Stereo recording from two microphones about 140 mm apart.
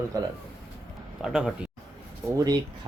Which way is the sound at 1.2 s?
5° right (ahead or behind).